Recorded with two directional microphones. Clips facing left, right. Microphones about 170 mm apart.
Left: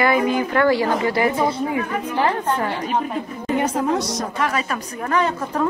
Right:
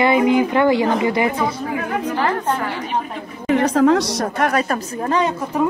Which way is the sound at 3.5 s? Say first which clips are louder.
Right 6 dB; 90° right.